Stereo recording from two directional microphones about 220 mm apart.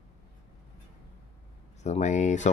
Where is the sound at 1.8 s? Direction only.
30° left (ahead or behind).